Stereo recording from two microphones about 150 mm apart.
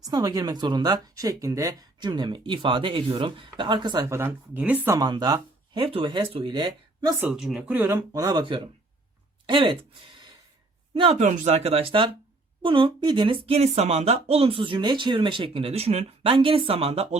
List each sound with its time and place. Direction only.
0.0 s speech: 25° right (ahead or behind)
4.9 s speech: 30° right (ahead or behind)
7.3 s speech: centre (ahead or behind)
8.1 s speech: 25° right (ahead or behind); by 17.2 s 45° right (ahead or behind)